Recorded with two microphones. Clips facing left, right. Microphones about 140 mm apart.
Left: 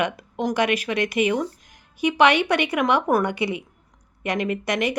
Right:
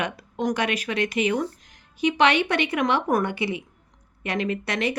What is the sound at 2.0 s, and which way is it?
A woman's voice, 10° left (ahead or behind).